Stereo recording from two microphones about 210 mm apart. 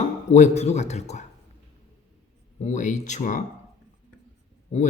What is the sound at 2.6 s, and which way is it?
Speech, 35° left (ahead or behind).